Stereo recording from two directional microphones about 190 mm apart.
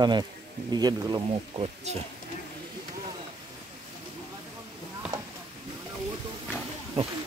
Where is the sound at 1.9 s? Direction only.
35° right (ahead or behind).